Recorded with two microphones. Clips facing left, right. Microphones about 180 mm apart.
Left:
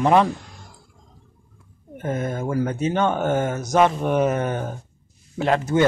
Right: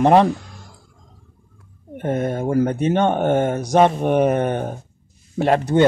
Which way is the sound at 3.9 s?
55° right (ahead or behind).